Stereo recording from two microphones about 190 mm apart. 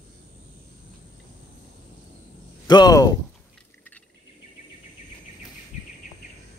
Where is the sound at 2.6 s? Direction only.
20° left (ahead or behind).